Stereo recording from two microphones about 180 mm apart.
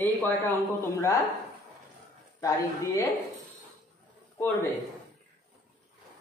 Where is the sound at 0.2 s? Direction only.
15° left (ahead or behind).